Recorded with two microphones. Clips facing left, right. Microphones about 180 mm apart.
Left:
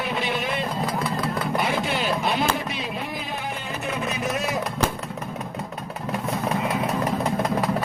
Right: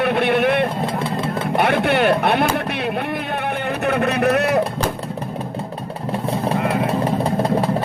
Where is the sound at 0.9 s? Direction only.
25° right (ahead or behind).